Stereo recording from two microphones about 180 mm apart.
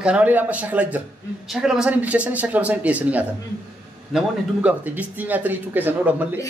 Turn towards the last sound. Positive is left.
turn(degrees=-10)  # may be behind; listen again after turning